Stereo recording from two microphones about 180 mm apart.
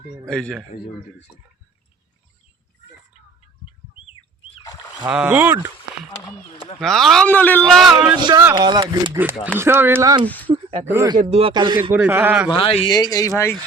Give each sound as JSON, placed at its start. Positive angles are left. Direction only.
{"t": 0.3, "sound": "speech", "side_deg": 5}
{"t": 5.1, "sound": "speech", "side_deg": -10}
{"t": 6.1, "sound": "speech", "side_deg": 35}
{"t": 6.7, "sound": "speech", "side_deg": 0}
{"t": 8.1, "sound": "speech", "side_deg": -25}
{"t": 9.1, "sound": "speech", "side_deg": -10}
{"t": 10.2, "sound": "speech", "side_deg": 10}
{"t": 10.8, "sound": "speech", "side_deg": -15}
{"t": 11.2, "sound": "a man's voice", "side_deg": -35}
{"t": 11.9, "sound": "speech", "side_deg": -10}
{"t": 12.5, "sound": "speech", "side_deg": 30}